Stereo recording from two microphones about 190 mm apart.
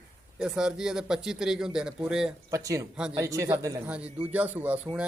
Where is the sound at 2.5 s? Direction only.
15° right (ahead or behind).